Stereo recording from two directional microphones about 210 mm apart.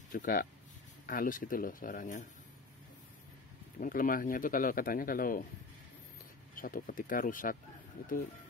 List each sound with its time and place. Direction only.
0.1 s a man's voice: 45° left (ahead or behind)
3.8 s a man's voice: 40° left (ahead or behind)
6.5 s a man's voice: 40° left (ahead or behind)